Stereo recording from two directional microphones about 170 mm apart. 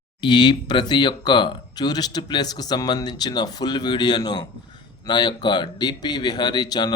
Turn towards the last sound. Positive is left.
turn(degrees=25)  # may be behind; listen again after turning